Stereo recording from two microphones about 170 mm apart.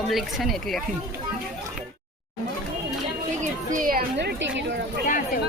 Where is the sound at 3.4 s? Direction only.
50° right (ahead or behind).